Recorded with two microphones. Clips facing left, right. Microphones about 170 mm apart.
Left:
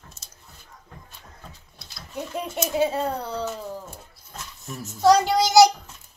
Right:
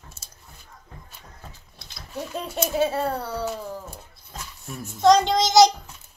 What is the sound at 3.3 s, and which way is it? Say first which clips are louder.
Speech: right 1 dB; 10° right (ahead or behind).